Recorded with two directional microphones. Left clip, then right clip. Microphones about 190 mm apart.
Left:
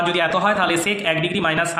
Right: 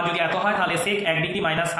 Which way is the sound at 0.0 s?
55° left (ahead or behind).